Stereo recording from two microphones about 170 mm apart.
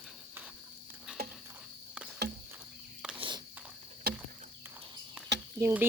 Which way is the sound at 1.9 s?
5° right (ahead or behind).